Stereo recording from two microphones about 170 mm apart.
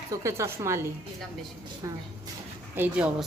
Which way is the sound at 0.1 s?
15° right (ahead or behind).